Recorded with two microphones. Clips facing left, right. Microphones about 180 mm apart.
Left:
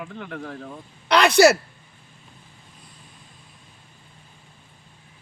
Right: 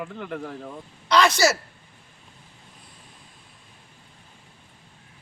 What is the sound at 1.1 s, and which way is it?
Speech, 60° left (ahead or behind).